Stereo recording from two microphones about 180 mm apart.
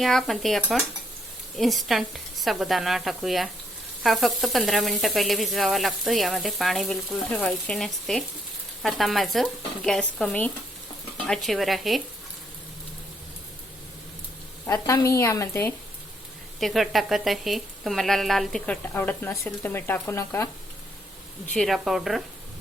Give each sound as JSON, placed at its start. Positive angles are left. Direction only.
{"t": 0.0, "sound": "sizzle", "side_deg": 0}
{"t": 14.7, "sound": "a woman's voice", "side_deg": 15}
{"t": 16.6, "sound": "sizzle", "side_deg": 0}
{"t": 21.4, "sound": "sizzle", "side_deg": 0}